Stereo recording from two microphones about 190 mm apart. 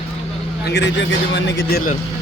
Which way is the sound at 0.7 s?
65° left (ahead or behind).